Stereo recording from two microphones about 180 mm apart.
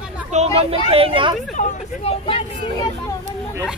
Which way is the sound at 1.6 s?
45° left (ahead or behind).